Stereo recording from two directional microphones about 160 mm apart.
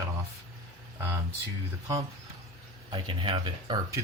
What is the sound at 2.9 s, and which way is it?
Speech, 30° right (ahead or behind).